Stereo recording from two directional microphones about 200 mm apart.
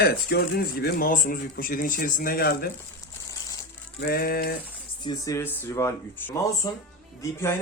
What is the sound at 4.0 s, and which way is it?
Speech, 50° left (ahead or behind).